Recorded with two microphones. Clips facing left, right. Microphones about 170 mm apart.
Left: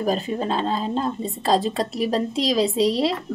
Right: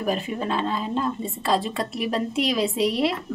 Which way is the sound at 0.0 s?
35° left (ahead or behind).